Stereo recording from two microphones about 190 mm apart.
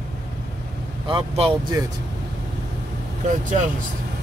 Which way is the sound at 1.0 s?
30° right (ahead or behind).